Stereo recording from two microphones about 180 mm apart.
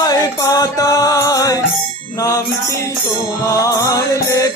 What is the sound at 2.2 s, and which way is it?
Mantra, 20° left (ahead or behind).